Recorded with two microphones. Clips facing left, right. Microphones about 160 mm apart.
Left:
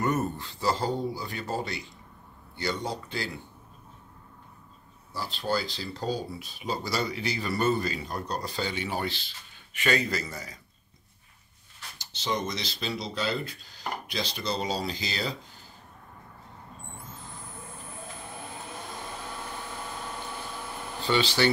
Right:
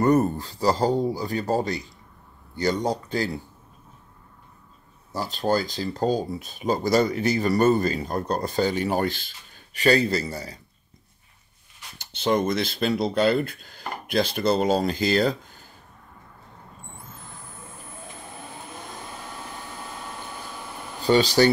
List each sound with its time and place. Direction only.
0.0 s speech: 40° right (ahead or behind)
5.1 s speech: 45° right (ahead or behind)
9.8 s speech: 35° right (ahead or behind)
12.0 s speech: 55° right (ahead or behind)
21.0 s speech: 40° right (ahead or behind)